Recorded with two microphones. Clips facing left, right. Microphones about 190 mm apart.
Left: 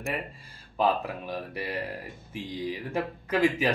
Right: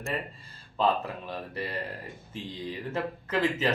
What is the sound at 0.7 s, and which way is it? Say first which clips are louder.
Speech: left 1 dB; 10° left (ahead or behind).